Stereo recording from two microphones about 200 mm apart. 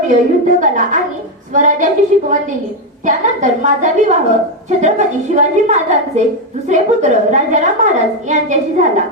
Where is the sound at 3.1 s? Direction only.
40° right (ahead or behind).